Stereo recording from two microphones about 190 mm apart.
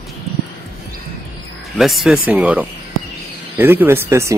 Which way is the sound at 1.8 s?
Centre (ahead or behind).